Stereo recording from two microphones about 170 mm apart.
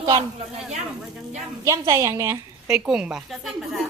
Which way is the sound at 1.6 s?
20° right (ahead or behind).